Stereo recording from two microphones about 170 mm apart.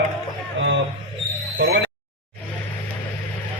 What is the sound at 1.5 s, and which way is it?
Speech, 90° right.